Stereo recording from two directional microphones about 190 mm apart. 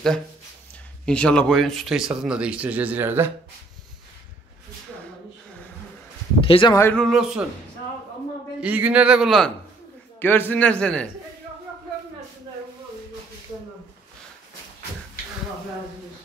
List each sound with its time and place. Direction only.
1.0 s speech: 5° left (ahead or behind); by 3.3 s 10° right (ahead or behind)
6.4 s speech: 30° left (ahead or behind)
6.7 s a man's voice: 15° left (ahead or behind)
7.0 s speech: centre (ahead or behind)
8.5 s speech: 10° right (ahead or behind)
10.1 s a man's voice: 10° left (ahead or behind)